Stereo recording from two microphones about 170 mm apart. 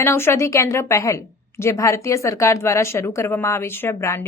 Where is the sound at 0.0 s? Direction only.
15° left (ahead or behind).